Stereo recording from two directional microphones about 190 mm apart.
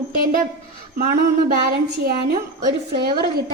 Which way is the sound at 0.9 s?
50° right (ahead or behind).